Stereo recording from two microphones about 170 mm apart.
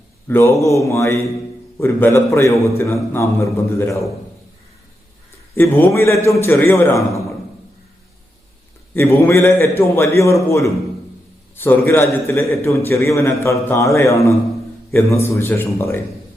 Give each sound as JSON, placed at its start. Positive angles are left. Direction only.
{"t": 0.3, "sound": "a man's voice", "side_deg": 15}
{"t": 5.5, "sound": "a man's voice", "side_deg": 10}
{"t": 9.0, "sound": "a man's voice", "side_deg": 15}
{"t": 11.5, "sound": "a man's voice", "side_deg": 15}